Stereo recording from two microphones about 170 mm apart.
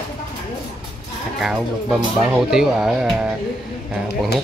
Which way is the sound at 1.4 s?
5° right (ahead or behind).